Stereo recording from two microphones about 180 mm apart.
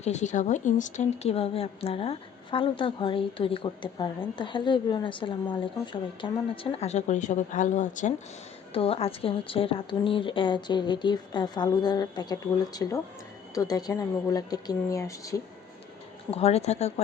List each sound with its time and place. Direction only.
0.0 s a woman's voice: 40° left (ahead or behind)
8.7 s a woman's voice: 35° left (ahead or behind)
16.3 s a woman's voice: 35° left (ahead or behind)